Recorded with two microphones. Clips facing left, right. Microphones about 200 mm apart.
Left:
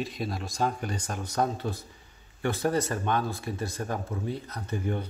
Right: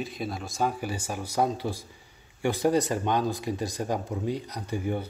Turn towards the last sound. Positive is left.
turn(degrees=-10)  # may be behind; listen again after turning